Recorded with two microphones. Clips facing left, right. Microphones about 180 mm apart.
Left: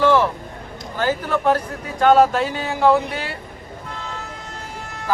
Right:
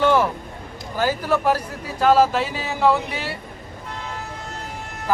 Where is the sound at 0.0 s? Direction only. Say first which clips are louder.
Left 2 dB; 15° right (ahead or behind).